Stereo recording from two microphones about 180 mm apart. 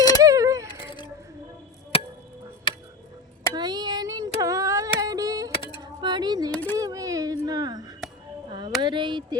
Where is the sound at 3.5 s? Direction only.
25° right (ahead or behind).